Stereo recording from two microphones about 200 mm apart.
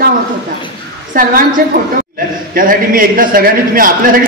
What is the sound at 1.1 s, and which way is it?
A man's voice, 45° right (ahead or behind).